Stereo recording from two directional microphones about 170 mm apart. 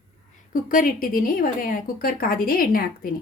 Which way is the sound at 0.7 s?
55° left (ahead or behind).